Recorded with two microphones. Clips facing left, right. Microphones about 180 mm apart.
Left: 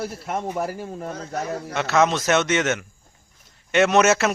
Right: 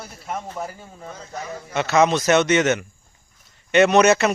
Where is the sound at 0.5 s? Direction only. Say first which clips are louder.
Left 5 dB; 70° left (ahead or behind).